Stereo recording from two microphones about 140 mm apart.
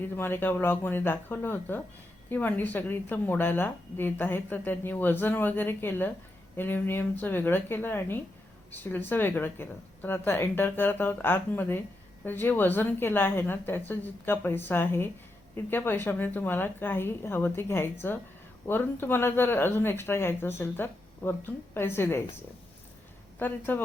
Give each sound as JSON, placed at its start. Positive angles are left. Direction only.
{"t": 0.0, "sound": "a woman's voice", "side_deg": 15}
{"t": 23.4, "sound": "a woman's voice", "side_deg": 15}